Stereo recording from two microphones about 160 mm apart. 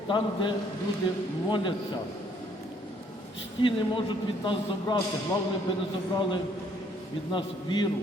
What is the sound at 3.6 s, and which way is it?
A man's voice, 30° left (ahead or behind).